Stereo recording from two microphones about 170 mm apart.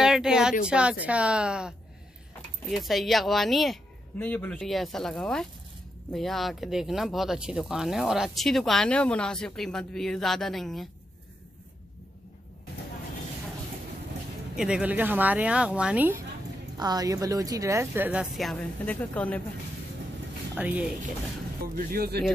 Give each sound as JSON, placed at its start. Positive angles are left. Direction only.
{"t": 0.0, "sound": "speech", "side_deg": -5}
{"t": 14.6, "sound": "a woman's voice", "side_deg": -5}
{"t": 16.7, "sound": "a woman's voice", "side_deg": -25}
{"t": 20.5, "sound": "a woman's voice", "side_deg": -10}
{"t": 21.7, "sound": "speech", "side_deg": -65}